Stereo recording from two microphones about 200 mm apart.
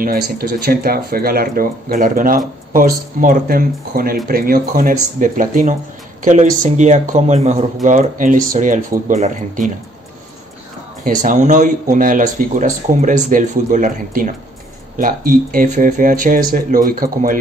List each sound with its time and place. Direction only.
0.0 s speech: 45° right (ahead or behind)
11.1 s speech: 40° right (ahead or behind)